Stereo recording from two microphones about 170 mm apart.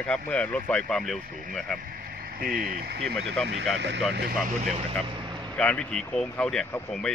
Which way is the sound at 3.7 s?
90° right.